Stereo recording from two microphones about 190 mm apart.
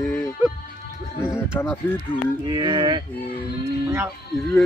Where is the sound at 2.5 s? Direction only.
25° right (ahead or behind).